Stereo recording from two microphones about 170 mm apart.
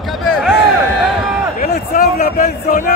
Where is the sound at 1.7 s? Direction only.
70° left (ahead or behind).